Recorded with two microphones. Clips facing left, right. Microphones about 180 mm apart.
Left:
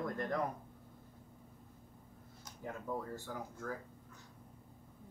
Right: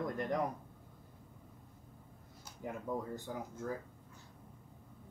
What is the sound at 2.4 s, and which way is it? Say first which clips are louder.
Speech: right 2 dB; 15° right (ahead or behind).